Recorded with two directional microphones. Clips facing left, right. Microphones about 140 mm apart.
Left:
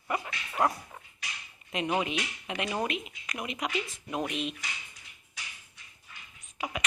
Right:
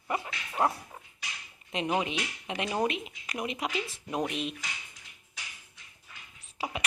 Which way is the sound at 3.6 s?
Centre (ahead or behind).